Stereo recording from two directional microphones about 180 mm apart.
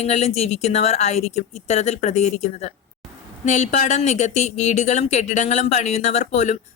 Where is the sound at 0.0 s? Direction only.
35° left (ahead or behind).